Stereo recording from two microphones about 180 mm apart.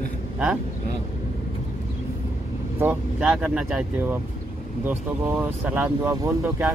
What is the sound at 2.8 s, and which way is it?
Speech, 10° right (ahead or behind).